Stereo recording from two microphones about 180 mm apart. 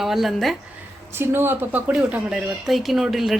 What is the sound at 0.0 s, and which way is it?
Speech, centre (ahead or behind).